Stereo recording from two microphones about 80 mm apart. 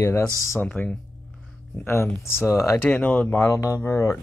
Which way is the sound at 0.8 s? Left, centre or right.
Left.